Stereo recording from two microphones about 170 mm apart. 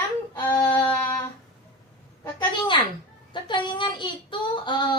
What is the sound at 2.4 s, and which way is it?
A woman's voice, 25° left (ahead or behind).